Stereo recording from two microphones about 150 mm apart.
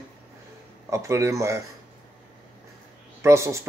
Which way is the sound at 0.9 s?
20° right (ahead or behind).